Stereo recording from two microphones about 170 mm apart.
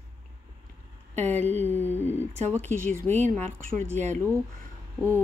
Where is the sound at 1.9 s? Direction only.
10° left (ahead or behind).